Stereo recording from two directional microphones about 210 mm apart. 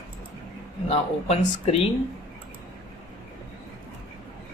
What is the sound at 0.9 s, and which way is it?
Speech, 30° left (ahead or behind).